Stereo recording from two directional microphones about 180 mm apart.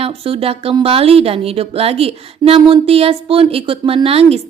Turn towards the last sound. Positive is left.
turn(degrees=-35)  # may be behind; listen again after turning